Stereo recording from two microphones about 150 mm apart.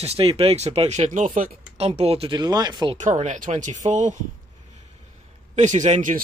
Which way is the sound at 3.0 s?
55° right (ahead or behind).